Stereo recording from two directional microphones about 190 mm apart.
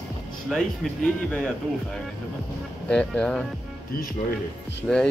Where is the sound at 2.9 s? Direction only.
5° left (ahead or behind).